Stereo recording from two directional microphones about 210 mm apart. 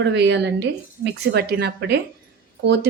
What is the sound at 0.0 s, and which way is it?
A woman's voice, 55° right (ahead or behind).